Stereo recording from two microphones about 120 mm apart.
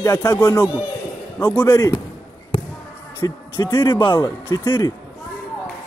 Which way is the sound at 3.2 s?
30° left (ahead or behind).